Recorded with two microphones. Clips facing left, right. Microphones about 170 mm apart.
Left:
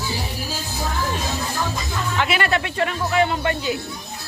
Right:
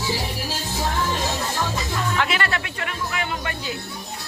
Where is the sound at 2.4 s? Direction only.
20° left (ahead or behind).